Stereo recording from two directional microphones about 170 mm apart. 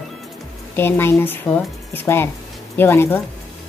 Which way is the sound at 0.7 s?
15° left (ahead or behind).